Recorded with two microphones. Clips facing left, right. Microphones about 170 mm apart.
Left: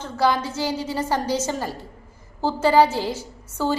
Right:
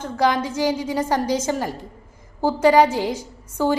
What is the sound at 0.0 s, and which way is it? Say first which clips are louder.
A woman's voice: right 1 dB; 15° right (ahead or behind).